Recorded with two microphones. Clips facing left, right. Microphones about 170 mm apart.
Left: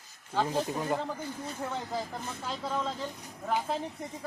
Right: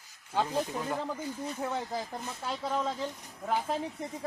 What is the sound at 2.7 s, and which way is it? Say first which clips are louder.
Speech: right 1 dB; 15° right (ahead or behind).